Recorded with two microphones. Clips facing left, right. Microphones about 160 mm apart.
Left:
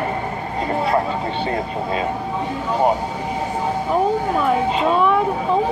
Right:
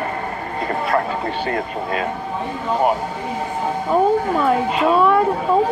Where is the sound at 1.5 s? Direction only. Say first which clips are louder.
Even; 25° left (ahead or behind).